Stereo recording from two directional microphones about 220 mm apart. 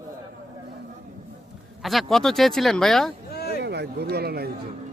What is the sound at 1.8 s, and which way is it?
Speech, centre (ahead or behind).